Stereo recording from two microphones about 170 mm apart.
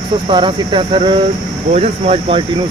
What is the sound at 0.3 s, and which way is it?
Speech, 30° right (ahead or behind).